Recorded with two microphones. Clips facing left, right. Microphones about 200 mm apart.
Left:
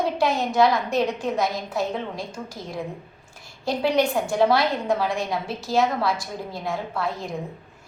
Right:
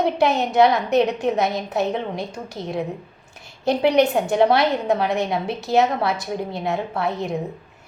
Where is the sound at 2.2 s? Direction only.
65° right (ahead or behind).